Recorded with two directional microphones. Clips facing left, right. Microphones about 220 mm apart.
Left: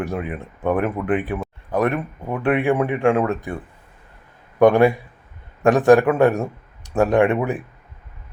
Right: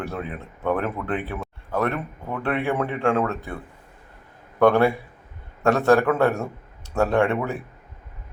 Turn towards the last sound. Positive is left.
turn(degrees=15)  # may be behind; listen again after turning